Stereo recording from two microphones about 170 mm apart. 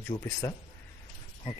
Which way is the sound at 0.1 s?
20° left (ahead or behind).